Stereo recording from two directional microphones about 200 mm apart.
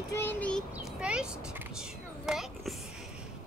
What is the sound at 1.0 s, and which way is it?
Speech, 5° right (ahead or behind).